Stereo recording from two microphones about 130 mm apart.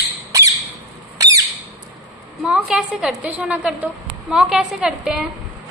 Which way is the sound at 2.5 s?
5° right (ahead or behind).